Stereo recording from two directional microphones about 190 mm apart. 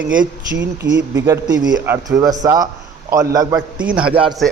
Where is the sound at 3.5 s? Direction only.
5° right (ahead or behind).